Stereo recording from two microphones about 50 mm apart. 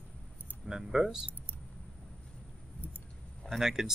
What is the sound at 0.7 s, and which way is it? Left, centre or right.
Speech, centre.